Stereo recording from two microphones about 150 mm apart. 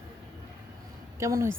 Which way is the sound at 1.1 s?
20° right (ahead or behind).